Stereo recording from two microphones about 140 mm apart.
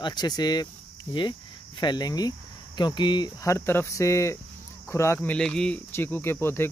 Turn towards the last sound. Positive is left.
turn(degrees=15)  # may be behind; listen again after turning